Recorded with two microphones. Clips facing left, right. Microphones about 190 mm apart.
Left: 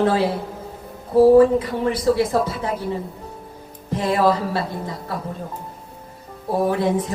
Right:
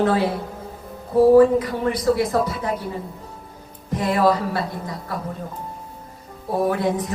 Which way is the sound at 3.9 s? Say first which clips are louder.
Left 1 dB; 25° left (ahead or behind).